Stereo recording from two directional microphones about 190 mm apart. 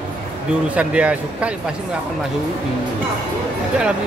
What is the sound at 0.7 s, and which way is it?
Speech, 5° right (ahead or behind).